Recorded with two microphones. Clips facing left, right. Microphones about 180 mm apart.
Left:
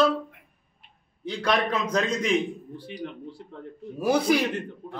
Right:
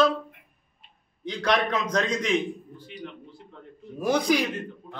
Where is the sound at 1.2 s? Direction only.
5° left (ahead or behind).